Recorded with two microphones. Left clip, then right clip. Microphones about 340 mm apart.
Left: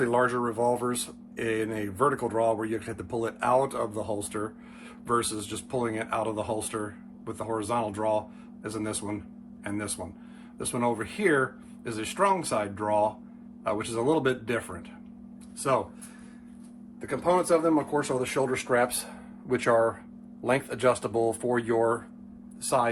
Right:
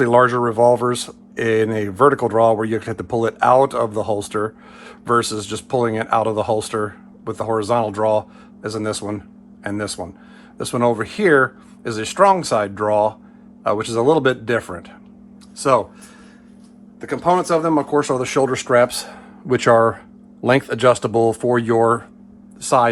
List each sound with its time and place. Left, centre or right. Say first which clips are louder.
0.0 s speech: right 11 dB; right
17.1 s speech: right 7 dB; right